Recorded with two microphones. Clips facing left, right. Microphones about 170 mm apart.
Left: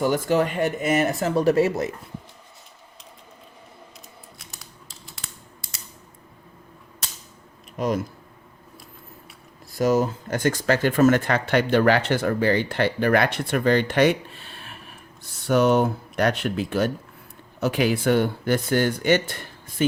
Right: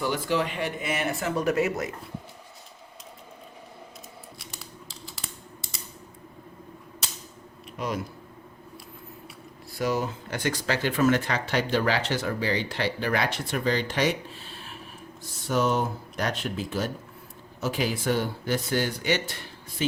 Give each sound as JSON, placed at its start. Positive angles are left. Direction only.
{"t": 0.0, "sound": "speech", "side_deg": 45}
{"t": 5.0, "sound": "typing", "side_deg": 0}
{"t": 7.8, "sound": "speech", "side_deg": 45}
{"t": 9.7, "sound": "speech", "side_deg": 45}